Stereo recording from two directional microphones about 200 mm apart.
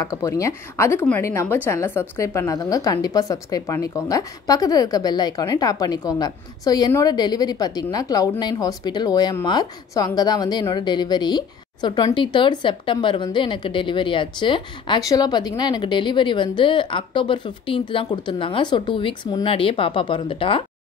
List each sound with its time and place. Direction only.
0.0 s a woman's voice: 15° left (ahead or behind)